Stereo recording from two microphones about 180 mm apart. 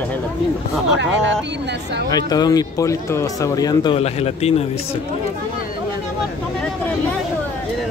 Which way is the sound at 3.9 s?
35° left (ahead or behind).